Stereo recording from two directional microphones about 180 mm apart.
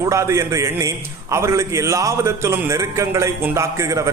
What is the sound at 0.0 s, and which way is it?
A man's voice, 15° right (ahead or behind).